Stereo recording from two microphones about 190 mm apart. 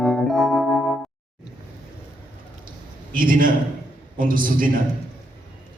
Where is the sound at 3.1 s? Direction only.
45° right (ahead or behind).